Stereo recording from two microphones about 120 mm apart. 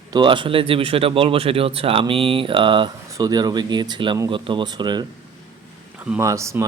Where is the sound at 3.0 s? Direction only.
30° right (ahead or behind).